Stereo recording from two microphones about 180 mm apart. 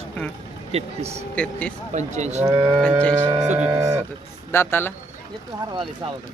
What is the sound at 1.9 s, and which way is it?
Speech, 40° right (ahead or behind).